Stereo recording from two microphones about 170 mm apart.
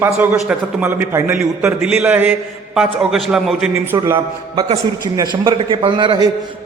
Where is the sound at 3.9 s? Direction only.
15° right (ahead or behind).